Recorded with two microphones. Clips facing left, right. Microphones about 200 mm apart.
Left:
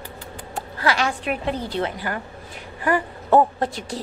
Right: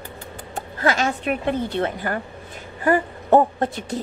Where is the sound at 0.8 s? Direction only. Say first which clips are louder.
Right 2 dB; 45° right (ahead or behind).